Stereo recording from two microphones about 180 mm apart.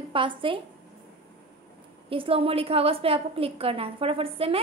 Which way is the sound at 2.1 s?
30° right (ahead or behind).